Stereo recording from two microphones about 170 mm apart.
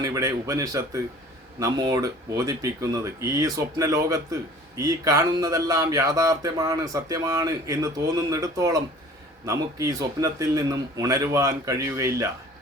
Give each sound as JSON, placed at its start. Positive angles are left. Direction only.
{"t": 0.0, "sound": "speech", "side_deg": -20}